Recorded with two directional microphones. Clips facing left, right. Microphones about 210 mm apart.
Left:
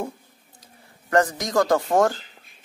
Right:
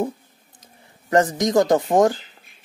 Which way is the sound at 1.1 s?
20° right (ahead or behind).